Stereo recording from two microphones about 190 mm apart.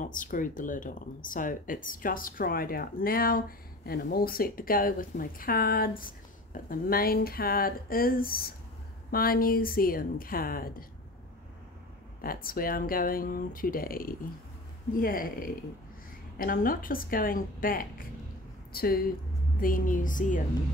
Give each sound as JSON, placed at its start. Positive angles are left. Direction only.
{"t": 0.0, "sound": "speech", "side_deg": 45}
{"t": 12.2, "sound": "speech", "side_deg": 50}